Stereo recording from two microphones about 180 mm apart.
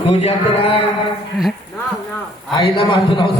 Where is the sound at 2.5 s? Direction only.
30° left (ahead or behind).